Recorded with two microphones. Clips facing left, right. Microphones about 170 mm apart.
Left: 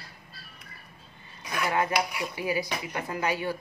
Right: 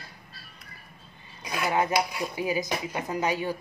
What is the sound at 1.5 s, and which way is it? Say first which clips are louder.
Speech: right 1 dB; 20° right (ahead or behind).